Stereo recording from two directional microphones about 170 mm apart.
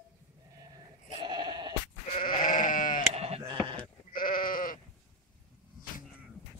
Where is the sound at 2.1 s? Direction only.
50° left (ahead or behind).